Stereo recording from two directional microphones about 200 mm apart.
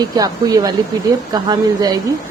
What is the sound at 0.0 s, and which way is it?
Speech, 20° right (ahead or behind).